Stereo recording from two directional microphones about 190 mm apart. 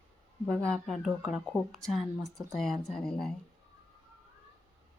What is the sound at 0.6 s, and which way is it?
Speech, centre (ahead or behind).